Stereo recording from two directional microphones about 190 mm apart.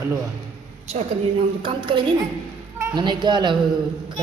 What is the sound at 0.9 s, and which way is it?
A woman's voice, 30° right (ahead or behind).